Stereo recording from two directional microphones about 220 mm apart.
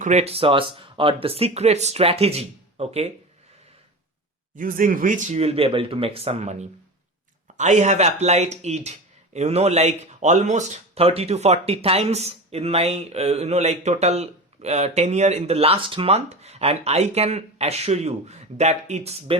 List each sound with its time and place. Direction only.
0.0 s speech: 30° right (ahead or behind)
4.5 s speech: 40° right (ahead or behind)